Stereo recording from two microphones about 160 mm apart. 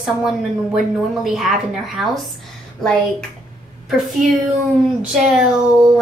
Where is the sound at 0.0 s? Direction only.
Centre (ahead or behind).